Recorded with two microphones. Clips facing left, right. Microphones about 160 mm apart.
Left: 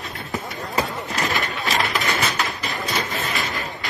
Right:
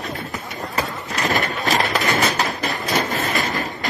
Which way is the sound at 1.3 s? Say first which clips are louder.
Right 6 dB; 40° right (ahead or behind).